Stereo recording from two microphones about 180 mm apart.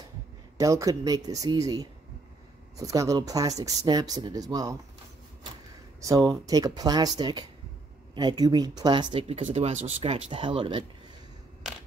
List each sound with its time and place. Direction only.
0.6 s speech: 20° right (ahead or behind)
5.9 s speech: 20° right (ahead or behind)